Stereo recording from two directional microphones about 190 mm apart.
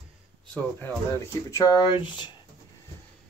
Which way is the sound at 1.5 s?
20° left (ahead or behind).